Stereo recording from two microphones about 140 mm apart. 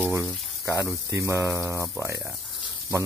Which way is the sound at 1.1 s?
20° right (ahead or behind).